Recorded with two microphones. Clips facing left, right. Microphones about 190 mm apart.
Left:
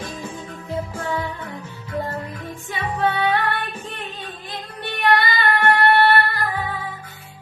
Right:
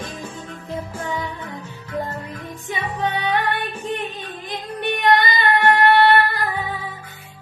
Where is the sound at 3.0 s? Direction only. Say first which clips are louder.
Left 2 dB; 20° right (ahead or behind).